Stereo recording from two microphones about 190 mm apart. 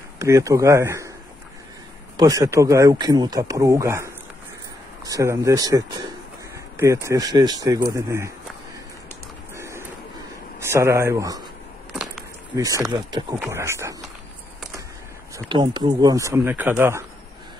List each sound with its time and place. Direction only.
0.2 s speech: 15° right (ahead or behind)
2.1 s speech: 20° right (ahead or behind)
9.6 s a sound: 15° right (ahead or behind)
10.6 s speech: 15° right (ahead or behind)
12.5 s speech: 20° right (ahead or behind)
15.3 s speech: 25° right (ahead or behind)